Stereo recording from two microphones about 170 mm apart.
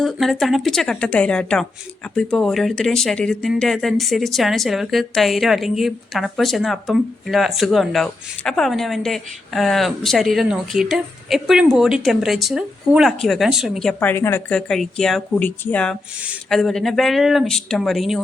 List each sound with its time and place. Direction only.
0.0 s speech: centre (ahead or behind)
14.7 s speech: centre (ahead or behind)